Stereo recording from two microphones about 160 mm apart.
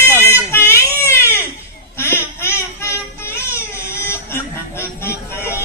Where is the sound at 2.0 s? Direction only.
15° left (ahead or behind).